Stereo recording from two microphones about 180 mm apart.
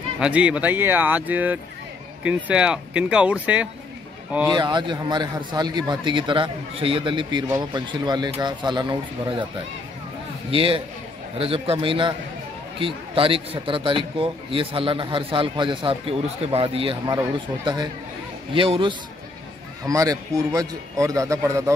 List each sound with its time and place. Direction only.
0.2 s a man's voice: 5° right (ahead or behind)
4.5 s speech: 25° right (ahead or behind)
10.5 s a man's voice: 30° right (ahead or behind)
18.5 s speech: 30° right (ahead or behind)
19.9 s a man's voice: 20° right (ahead or behind)